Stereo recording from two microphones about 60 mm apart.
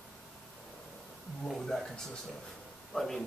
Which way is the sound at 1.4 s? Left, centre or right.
Centre.